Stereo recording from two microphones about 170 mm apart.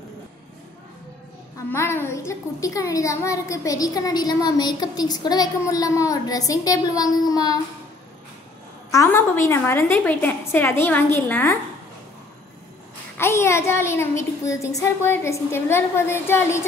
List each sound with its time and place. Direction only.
1.7 s a child's voice: 15° left (ahead or behind)
8.9 s a child's voice: 15° left (ahead or behind)
13.2 s a child's voice: 15° left (ahead or behind)